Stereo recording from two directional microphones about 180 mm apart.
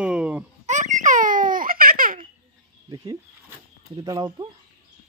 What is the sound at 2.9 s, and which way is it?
Speech, 20° right (ahead or behind).